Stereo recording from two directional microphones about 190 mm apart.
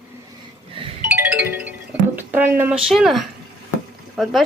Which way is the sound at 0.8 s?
25° right (ahead or behind).